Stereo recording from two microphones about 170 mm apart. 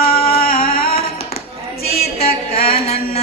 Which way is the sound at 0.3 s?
60° left (ahead or behind).